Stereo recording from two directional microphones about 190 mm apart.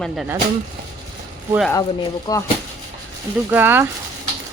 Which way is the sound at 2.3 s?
20° left (ahead or behind).